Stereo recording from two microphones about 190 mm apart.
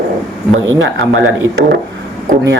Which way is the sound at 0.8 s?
90° right.